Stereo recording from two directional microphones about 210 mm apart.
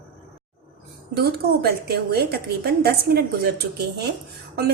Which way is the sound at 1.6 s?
50° right (ahead or behind).